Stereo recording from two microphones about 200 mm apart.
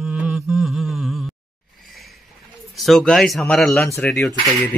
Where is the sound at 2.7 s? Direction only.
Centre (ahead or behind).